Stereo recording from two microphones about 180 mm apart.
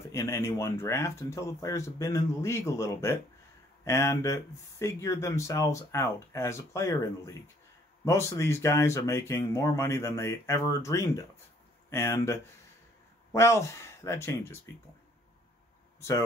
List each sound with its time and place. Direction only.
0.1 s speech: 15° left (ahead or behind)
16.0 s speech: 15° left (ahead or behind)